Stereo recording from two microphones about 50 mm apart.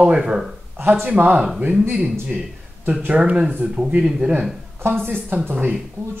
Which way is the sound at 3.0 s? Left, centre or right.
Right.